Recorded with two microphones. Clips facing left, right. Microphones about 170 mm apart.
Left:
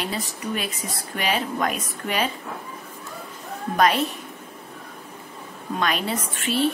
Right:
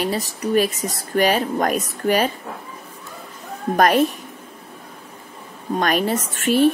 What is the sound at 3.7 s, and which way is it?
Speech, 45° right (ahead or behind).